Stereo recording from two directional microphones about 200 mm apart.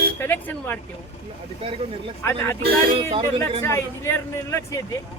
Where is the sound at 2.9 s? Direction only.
30° right (ahead or behind).